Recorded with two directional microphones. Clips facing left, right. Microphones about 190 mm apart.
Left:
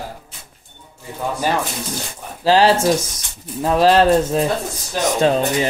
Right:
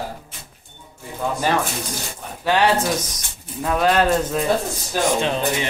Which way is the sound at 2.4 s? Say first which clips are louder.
Left 4 dB; 30° left (ahead or behind).